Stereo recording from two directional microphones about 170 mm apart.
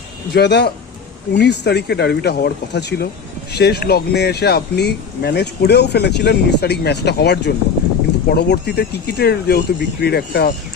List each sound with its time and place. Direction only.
0.3 s speech: 85° left; by 10.5 s 70° left (ahead or behind)